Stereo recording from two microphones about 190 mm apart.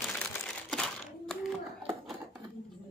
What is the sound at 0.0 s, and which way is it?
Crumpling, 5° left (ahead or behind).